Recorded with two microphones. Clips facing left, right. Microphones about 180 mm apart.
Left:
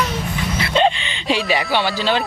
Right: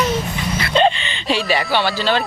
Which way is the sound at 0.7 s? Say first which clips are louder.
Right 1 dB; 10° left (ahead or behind).